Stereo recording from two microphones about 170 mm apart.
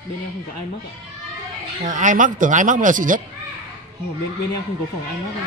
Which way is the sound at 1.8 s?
50° right (ahead or behind).